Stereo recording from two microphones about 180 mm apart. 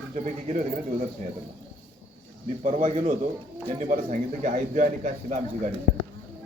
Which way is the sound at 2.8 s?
40° right (ahead or behind).